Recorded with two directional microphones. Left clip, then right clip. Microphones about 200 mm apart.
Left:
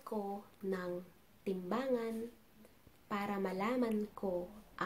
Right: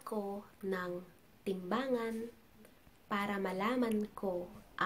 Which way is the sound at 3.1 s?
5° left (ahead or behind).